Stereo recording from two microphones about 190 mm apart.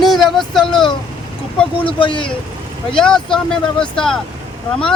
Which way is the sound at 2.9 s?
5° left (ahead or behind).